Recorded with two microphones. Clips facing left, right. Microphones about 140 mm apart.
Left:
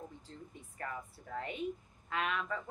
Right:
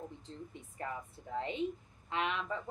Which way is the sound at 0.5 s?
20° right (ahead or behind).